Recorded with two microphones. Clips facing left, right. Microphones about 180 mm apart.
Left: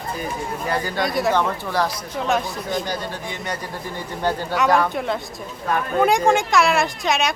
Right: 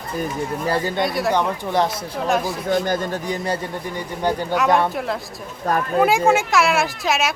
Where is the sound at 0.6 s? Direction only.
30° right (ahead or behind).